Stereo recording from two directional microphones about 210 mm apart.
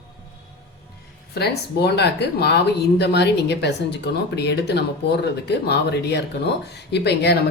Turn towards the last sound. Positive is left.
turn(degrees=55)  # may be behind; listen again after turning